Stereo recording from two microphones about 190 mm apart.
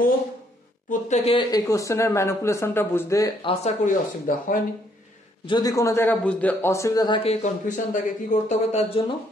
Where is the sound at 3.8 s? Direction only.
45° left (ahead or behind).